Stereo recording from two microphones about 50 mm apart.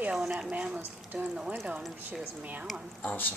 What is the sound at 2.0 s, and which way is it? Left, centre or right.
Speech, right.